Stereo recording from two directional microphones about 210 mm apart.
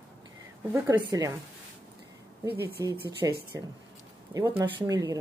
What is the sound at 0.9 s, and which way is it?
Speech, 20° right (ahead or behind).